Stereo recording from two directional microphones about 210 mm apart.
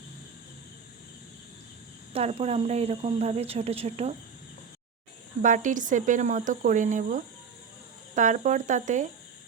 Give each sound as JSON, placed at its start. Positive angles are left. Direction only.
{"t": 2.1, "sound": "speech", "side_deg": -30}
{"t": 5.4, "sound": "speech", "side_deg": -40}